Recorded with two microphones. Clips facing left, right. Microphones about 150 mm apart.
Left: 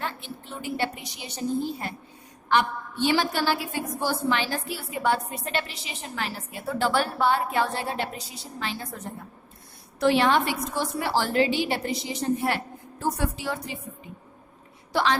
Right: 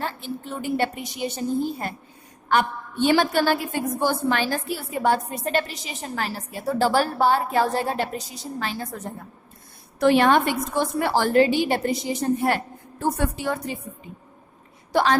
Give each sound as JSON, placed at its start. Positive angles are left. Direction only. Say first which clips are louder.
{"t": 0.0, "sound": "a woman's voice", "louder": "right 4 dB", "side_deg": -45}
{"t": 10.0, "sound": "a woman's voice", "louder": "right 4 dB", "side_deg": -50}
{"t": 14.9, "sound": "a woman's voice", "louder": "right 4 dB", "side_deg": -50}